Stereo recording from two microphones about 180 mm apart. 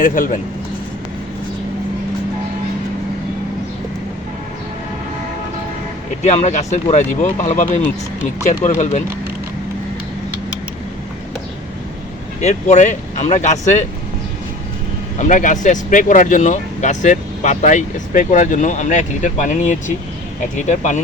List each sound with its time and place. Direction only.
0.0 s speech: 45° left (ahead or behind)
6.2 s speech: 40° left (ahead or behind)
12.4 s speech: 40° left (ahead or behind)
15.2 s speech: 45° left (ahead or behind)